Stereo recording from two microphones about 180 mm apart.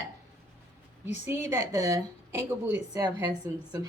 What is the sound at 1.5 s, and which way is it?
A woman's voice, 20° right (ahead or behind).